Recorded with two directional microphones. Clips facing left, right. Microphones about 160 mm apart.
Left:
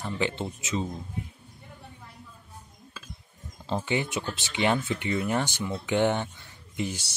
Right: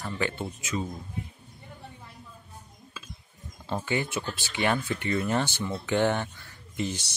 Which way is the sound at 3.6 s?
20° left (ahead or behind).